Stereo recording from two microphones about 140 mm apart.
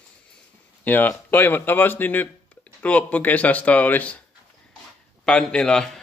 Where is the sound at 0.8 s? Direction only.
15° left (ahead or behind).